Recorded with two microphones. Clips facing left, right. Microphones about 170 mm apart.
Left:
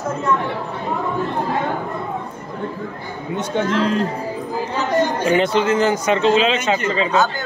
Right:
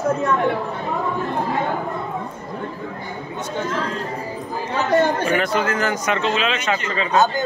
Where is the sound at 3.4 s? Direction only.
75° left (ahead or behind).